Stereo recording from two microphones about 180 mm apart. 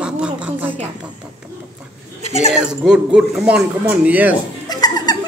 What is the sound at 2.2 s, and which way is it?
Speech, 40° left (ahead or behind).